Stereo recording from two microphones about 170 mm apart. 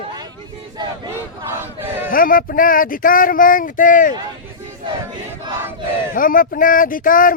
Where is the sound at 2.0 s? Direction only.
55° left (ahead or behind).